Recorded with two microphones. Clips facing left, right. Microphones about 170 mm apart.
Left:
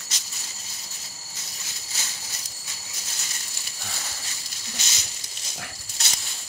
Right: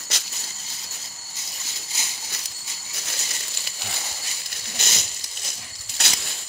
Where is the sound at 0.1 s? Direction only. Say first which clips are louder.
Right 5 dB; 65° right (ahead or behind).